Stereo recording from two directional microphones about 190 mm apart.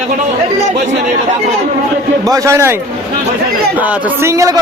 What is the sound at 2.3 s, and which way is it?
Speech, 15° right (ahead or behind).